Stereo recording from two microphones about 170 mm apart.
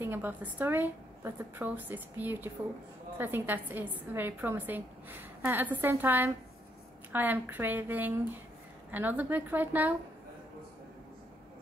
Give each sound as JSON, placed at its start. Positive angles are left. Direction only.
{"t": 0.0, "sound": "a woman's voice", "side_deg": -10}